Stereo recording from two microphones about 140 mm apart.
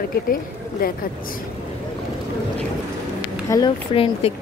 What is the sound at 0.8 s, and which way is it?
Speech, 90° left.